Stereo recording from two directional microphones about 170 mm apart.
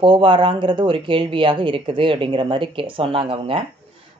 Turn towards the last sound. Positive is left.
turn(degrees=-35)  # may be behind; listen again after turning